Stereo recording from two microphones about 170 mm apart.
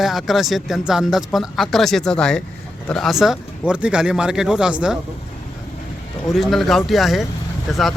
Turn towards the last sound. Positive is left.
turn(degrees=0)  # may be behind; listen again after turning